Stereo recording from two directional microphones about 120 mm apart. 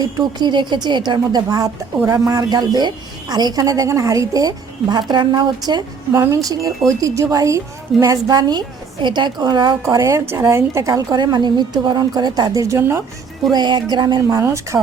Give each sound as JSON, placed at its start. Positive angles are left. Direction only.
{"t": 0.0, "sound": "a woman's voice", "side_deg": -35}
{"t": 6.1, "sound": "speech", "side_deg": -25}
{"t": 9.8, "sound": "speech", "side_deg": -25}
{"t": 13.5, "sound": "a woman's voice", "side_deg": -35}